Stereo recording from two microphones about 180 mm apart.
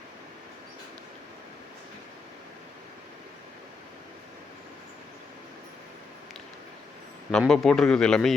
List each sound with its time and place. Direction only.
7.3 s a man's voice: 5° left (ahead or behind)